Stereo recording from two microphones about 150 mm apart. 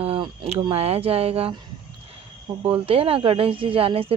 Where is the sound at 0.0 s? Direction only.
40° right (ahead or behind).